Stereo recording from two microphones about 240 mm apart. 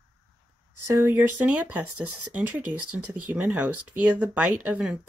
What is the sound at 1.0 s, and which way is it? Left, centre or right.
Speech, centre.